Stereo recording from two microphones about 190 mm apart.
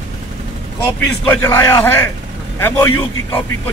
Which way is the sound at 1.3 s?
10° left (ahead or behind).